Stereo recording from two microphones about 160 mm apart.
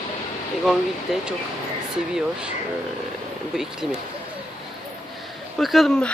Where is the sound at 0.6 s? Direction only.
Centre (ahead or behind).